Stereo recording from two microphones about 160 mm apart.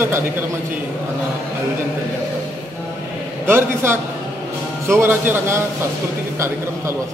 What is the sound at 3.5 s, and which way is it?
A man's voice, 15° right (ahead or behind).